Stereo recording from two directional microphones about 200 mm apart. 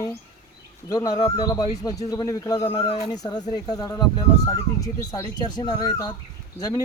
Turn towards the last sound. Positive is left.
turn(degrees=20)  # may be behind; listen again after turning